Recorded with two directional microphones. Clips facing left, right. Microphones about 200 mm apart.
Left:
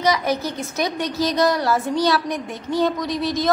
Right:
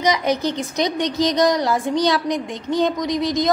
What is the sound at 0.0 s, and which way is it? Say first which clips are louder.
A woman's voice: right 1 dB; 20° right (ahead or behind).